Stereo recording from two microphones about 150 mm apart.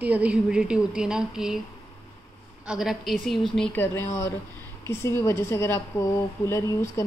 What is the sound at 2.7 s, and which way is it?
A woman's voice, centre (ahead or behind).